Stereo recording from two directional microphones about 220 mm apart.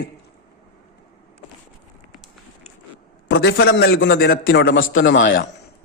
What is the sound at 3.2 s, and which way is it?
A man's voice, 45° left (ahead or behind).